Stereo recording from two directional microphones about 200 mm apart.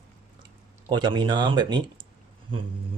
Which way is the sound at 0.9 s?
20° right (ahead or behind).